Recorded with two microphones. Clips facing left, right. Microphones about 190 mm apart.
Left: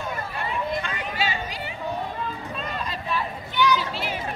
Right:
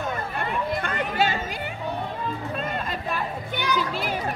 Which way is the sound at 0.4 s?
55° right (ahead or behind).